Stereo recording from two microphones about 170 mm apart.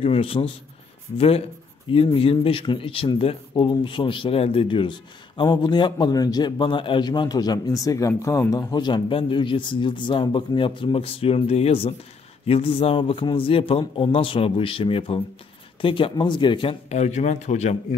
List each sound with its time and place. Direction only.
0.0 s speech: 35° left (ahead or behind)